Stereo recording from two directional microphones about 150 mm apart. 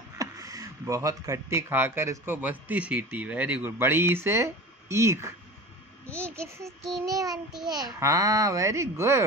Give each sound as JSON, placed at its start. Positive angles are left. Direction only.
{"t": 0.2, "sound": "a child's voice", "side_deg": -25}